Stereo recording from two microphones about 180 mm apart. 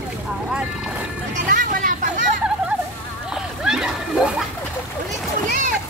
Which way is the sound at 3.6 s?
5° right (ahead or behind).